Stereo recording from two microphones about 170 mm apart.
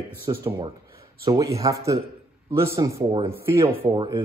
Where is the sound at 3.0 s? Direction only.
35° right (ahead or behind).